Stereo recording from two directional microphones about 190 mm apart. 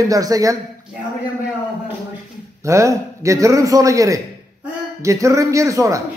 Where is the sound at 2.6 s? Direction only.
15° right (ahead or behind).